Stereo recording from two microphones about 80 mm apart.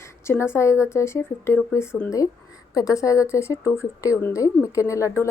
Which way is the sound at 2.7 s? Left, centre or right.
Left.